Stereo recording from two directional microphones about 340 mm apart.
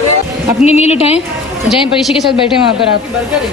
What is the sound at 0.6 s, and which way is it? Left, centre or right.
Speech, centre.